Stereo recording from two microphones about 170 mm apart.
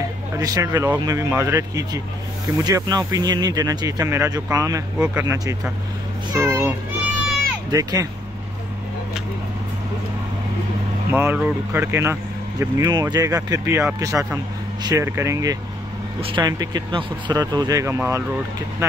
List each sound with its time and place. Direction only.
0.4 s a child's voice: 20° right (ahead or behind)
7.7 s speech: 20° right (ahead or behind)
11.1 s speech: 15° right (ahead or behind)
16.2 s speech: 30° right (ahead or behind)